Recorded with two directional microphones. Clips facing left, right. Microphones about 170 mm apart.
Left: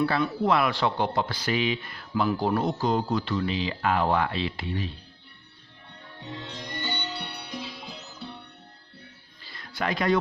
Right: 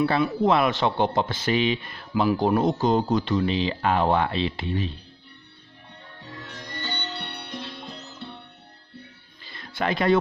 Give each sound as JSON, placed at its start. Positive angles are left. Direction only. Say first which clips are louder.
{"t": 0.4, "sound": "speech", "louder": "right 3 dB", "side_deg": -20}
{"t": 6.1, "sound": "music", "louder": "left 3 dB", "side_deg": 20}
{"t": 9.4, "sound": "music", "louder": "right 3 dB", "side_deg": -25}